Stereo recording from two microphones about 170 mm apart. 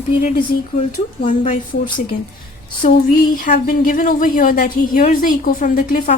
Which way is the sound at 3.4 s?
50° left (ahead or behind).